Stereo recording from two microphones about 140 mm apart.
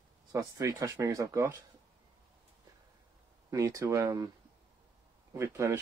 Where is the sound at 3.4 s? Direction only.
25° right (ahead or behind).